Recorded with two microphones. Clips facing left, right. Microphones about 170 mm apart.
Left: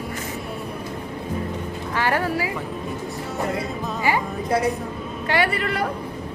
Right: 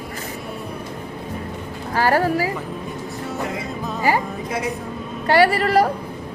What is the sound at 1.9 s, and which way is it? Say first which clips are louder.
Speech: right 5 dB; 35° right (ahead or behind).